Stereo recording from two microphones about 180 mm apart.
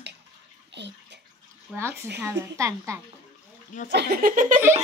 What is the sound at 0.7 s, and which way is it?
Bathtub, 75° right (ahead or behind).